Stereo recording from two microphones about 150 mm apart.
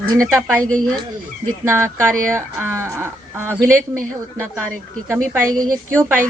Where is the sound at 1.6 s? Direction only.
15° right (ahead or behind).